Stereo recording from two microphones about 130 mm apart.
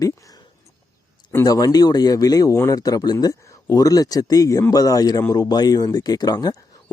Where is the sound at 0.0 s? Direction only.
25° left (ahead or behind).